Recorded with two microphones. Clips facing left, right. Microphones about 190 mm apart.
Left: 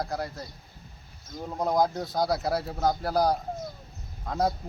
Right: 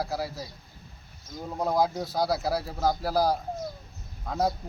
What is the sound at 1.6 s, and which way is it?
A man's voice, 5° right (ahead or behind).